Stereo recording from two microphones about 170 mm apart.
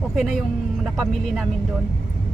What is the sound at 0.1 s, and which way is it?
Speech, centre (ahead or behind).